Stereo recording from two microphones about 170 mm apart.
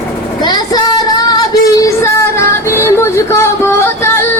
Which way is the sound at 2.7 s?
15° left (ahead or behind).